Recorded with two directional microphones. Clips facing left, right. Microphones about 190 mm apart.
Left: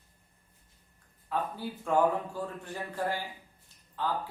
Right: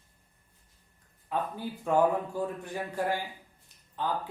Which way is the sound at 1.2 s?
15° right (ahead or behind).